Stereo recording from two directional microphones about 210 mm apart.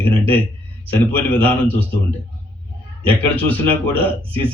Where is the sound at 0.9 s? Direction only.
5° left (ahead or behind).